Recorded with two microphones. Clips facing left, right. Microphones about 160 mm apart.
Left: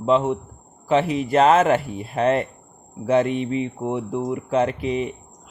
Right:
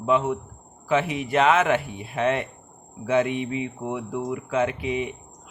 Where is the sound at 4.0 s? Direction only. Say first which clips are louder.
Left 3 dB; 25° left (ahead or behind).